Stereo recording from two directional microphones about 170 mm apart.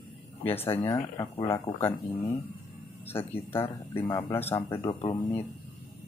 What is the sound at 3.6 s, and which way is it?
Speech, 15° left (ahead or behind).